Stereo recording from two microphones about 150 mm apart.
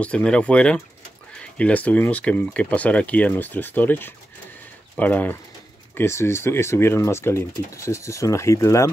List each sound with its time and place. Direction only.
0.0 s speech: 5° left (ahead or behind)